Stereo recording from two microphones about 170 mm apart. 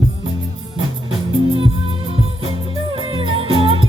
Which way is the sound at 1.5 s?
35° right (ahead or behind).